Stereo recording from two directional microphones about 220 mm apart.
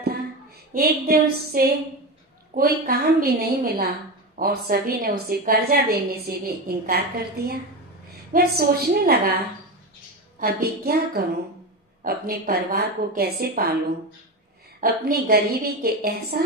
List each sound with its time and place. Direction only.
0.7 s a woman's voice: 45° right (ahead or behind)
10.4 s a woman's voice: 45° right (ahead or behind)
14.8 s a woman's voice: 40° right (ahead or behind)